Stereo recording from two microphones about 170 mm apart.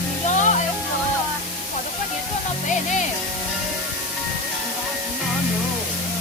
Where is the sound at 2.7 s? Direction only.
45° left (ahead or behind).